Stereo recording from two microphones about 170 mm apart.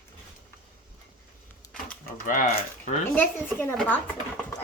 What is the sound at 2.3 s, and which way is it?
Speech, 50° left (ahead or behind).